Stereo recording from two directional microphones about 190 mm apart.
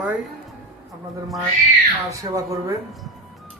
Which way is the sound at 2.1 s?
15° right (ahead or behind).